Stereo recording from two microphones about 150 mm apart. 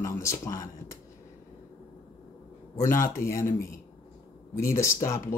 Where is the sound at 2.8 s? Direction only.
20° left (ahead or behind).